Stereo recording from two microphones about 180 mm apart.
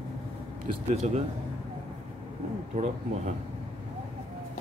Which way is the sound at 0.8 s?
35° right (ahead or behind).